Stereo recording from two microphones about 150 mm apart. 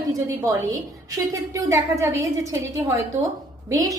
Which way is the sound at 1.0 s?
20° right (ahead or behind).